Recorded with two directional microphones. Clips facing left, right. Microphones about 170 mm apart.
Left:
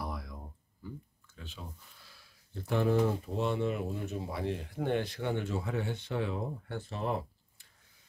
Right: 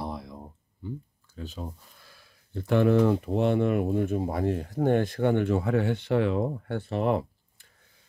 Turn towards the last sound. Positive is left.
turn(degrees=-65)  # may be behind; listen again after turning